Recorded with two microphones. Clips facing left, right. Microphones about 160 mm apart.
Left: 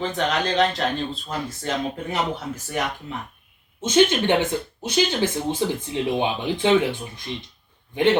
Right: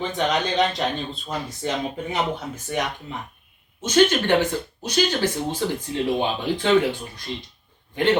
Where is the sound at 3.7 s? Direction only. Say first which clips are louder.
Even; 25° left (ahead or behind).